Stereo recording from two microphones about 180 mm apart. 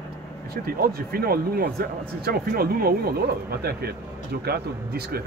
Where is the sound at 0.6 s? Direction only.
55° right (ahead or behind).